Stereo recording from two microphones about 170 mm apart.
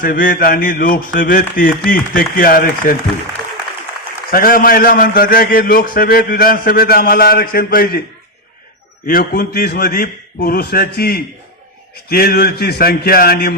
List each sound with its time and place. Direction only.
0.0 s a man's voice: 55° left (ahead or behind)
4.3 s a man's voice: 60° left (ahead or behind)
9.0 s a man's voice: 60° left (ahead or behind)